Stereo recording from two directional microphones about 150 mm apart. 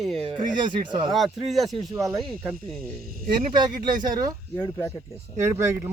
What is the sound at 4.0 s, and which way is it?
Speech, 25° right (ahead or behind).